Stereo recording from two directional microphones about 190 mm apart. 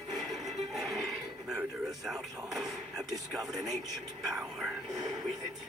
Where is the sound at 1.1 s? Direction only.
Centre (ahead or behind).